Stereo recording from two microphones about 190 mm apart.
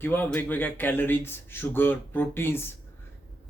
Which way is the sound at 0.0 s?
10° left (ahead or behind).